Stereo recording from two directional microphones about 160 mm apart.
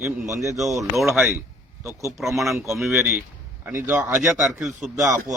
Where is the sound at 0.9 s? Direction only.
Centre (ahead or behind).